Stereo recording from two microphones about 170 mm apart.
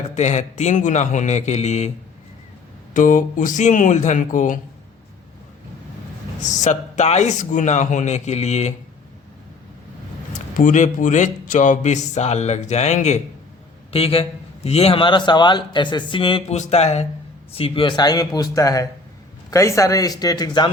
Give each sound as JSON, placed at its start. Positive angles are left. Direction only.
{"t": 0.1, "sound": "a man's voice", "side_deg": 45}
{"t": 2.9, "sound": "a man's voice", "side_deg": 50}
{"t": 6.4, "sound": "a man's voice", "side_deg": 45}
{"t": 10.3, "sound": "a man's voice", "side_deg": 45}